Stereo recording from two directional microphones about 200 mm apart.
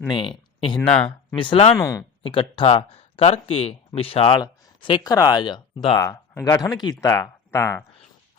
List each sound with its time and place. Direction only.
0.1 s speech: 25° left (ahead or behind)
0.8 s speech: 10° left (ahead or behind)
1.4 s speech: 30° left (ahead or behind)
1.7 s speech: 15° left (ahead or behind)
2.2 s speech: 25° left (ahead or behind)